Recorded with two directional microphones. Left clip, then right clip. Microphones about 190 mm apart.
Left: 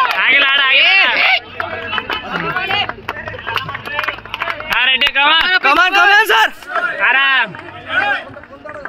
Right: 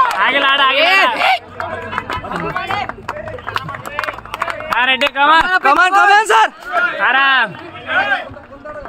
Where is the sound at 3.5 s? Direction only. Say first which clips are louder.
Left 2 dB; 30° left (ahead or behind).